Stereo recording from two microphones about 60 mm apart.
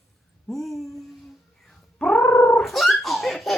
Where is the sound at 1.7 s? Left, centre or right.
Centre.